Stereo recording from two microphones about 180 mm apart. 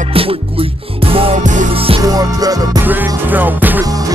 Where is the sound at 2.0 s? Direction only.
20° right (ahead or behind).